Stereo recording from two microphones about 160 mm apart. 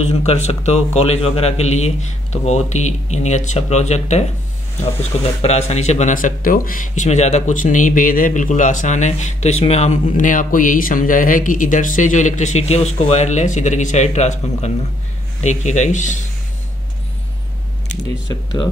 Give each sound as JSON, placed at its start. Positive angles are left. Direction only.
{"t": 0.0, "sound": "speech", "side_deg": 40}
{"t": 18.3, "sound": "speech", "side_deg": 25}